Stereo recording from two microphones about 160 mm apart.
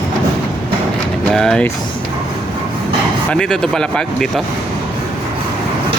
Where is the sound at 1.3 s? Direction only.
5° left (ahead or behind).